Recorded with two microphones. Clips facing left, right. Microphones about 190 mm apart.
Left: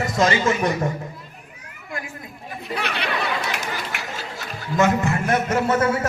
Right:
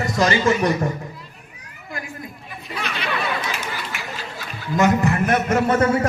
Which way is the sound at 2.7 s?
65° left (ahead or behind).